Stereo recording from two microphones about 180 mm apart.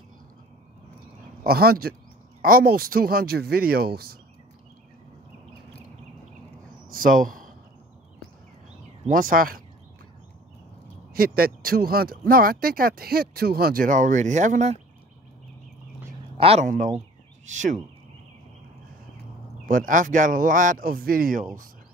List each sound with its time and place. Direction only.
1.4 s speech: 55° right (ahead or behind)
6.9 s a sound: 50° right (ahead or behind)
9.0 s speech: 50° right (ahead or behind)
11.1 s speech: 55° right (ahead or behind); by 14.8 s 40° right (ahead or behind)
16.3 s speech: 30° right (ahead or behind)
16.6 s speech: 45° right (ahead or behind)
19.7 s speech: 50° right (ahead or behind)